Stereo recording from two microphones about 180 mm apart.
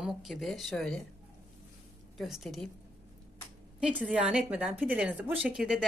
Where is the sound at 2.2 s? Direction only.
Centre (ahead or behind).